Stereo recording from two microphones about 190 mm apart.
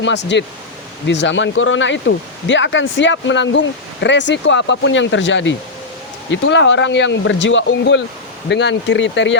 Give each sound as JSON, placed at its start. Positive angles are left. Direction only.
{"t": 0.0, "sound": "speech", "side_deg": 65}